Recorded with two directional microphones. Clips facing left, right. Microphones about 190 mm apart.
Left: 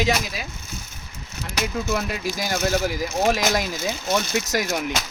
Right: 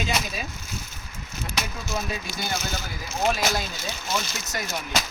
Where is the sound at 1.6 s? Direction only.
65° left (ahead or behind); by 4.8 s 90° left.